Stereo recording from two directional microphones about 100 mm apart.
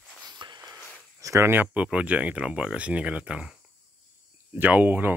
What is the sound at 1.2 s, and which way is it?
Speech, 30° right (ahead or behind).